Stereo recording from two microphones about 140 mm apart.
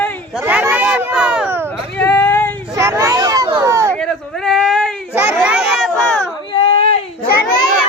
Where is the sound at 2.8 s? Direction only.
20° right (ahead or behind).